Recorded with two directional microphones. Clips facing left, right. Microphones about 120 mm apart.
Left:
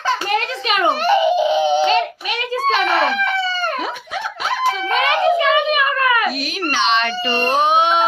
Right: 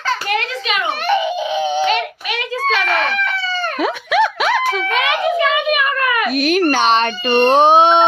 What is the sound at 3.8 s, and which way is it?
Giggle, 90° right.